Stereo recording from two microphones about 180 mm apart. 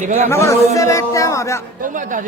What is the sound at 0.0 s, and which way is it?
Speech, 45° right (ahead or behind).